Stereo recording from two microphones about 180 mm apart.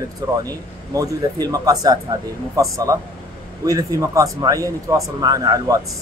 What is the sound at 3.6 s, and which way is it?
Speech, 20° right (ahead or behind).